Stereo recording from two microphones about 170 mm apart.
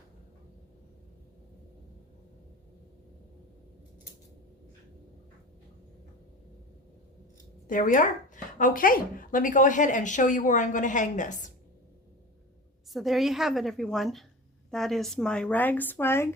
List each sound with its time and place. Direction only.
7.7 s speech: 50° left (ahead or behind)
12.9 s a woman's voice: centre (ahead or behind)